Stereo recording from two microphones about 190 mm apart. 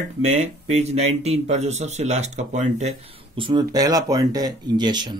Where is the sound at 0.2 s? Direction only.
35° right (ahead or behind).